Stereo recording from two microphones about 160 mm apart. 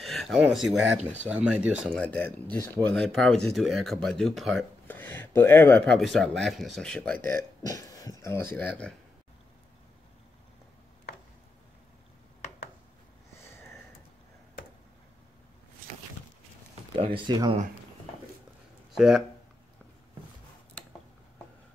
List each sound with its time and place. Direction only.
0.0 s speech: centre (ahead or behind)
1.9 s a man's voice: 10° left (ahead or behind)
4.8 s a man's voice: 10° left (ahead or behind)
8.5 s a man's voice: 5° left (ahead or behind)
16.9 s speech: 35° right (ahead or behind)
18.9 s speech: centre (ahead or behind)